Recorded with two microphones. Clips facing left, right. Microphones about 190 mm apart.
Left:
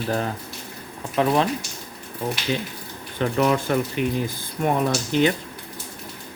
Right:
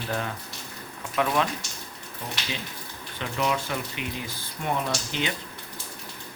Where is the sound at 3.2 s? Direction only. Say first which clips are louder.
Left 7 dB; 45° left (ahead or behind).